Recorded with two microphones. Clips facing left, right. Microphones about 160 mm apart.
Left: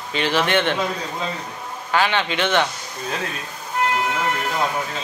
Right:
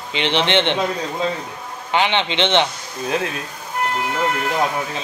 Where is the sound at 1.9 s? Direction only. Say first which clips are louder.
Right 1 dB; 20° right (ahead or behind).